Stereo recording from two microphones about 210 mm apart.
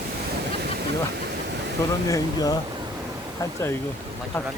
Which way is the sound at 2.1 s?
15° left (ahead or behind).